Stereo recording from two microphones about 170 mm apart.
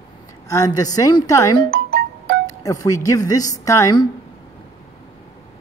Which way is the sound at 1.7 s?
65° right (ahead or behind).